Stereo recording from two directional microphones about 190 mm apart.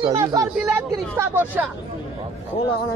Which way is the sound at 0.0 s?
20° right (ahead or behind).